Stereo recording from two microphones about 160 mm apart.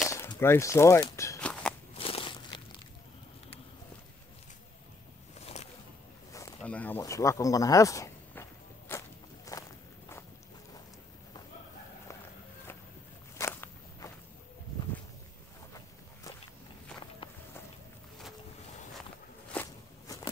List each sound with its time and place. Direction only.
0.1 s speech: 15° left (ahead or behind)
1.4 s walk: 5° left (ahead or behind)
2.0 s a sound: 35° left (ahead or behind)
5.4 s boat: 40° left (ahead or behind)
6.6 s a sound: 10° left (ahead or behind)
9.5 s walk: 20° left (ahead or behind)
13.4 s walk: 15° left (ahead or behind)
17.2 s run: 30° left (ahead or behind)
19.5 s walk: 15° left (ahead or behind)